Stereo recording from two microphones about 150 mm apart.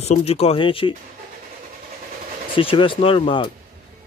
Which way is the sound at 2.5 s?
35° left (ahead or behind).